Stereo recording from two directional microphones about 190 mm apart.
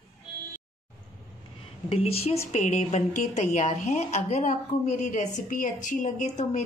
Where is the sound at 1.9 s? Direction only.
30° left (ahead or behind).